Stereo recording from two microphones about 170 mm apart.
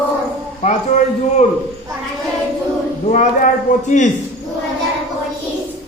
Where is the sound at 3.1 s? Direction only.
45° left (ahead or behind).